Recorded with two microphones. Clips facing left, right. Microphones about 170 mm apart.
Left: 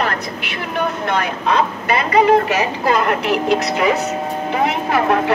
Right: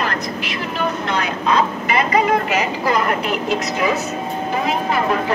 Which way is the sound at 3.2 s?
70° left (ahead or behind).